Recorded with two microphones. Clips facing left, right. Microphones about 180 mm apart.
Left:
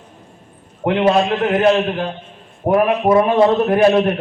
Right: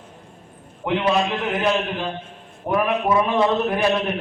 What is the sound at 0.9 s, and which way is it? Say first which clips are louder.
Speech: left 6 dB; 50° left (ahead or behind).